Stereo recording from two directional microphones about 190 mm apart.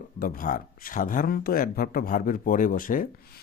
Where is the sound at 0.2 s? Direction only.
45° left (ahead or behind).